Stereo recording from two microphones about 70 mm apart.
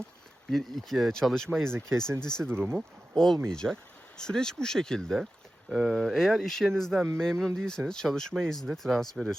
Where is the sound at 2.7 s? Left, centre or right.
Centre.